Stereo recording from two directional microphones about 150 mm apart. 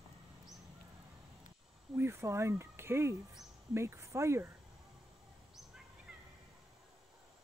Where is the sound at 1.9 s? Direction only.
15° right (ahead or behind).